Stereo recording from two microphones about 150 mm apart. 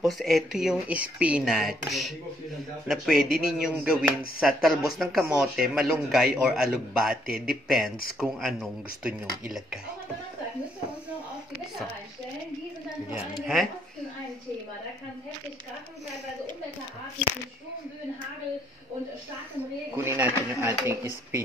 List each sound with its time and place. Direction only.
0.0 s speech: centre (ahead or behind)
20.1 s speech: 15° right (ahead or behind)